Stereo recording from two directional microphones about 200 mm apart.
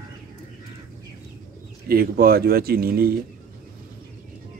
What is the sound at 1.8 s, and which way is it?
Speech, 50° right (ahead or behind).